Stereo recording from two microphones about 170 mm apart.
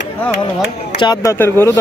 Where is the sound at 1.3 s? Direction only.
15° left (ahead or behind).